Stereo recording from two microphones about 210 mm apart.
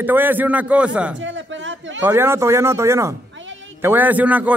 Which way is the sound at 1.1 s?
60° right (ahead or behind).